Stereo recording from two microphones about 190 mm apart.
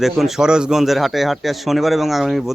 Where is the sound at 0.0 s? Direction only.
Centre (ahead or behind).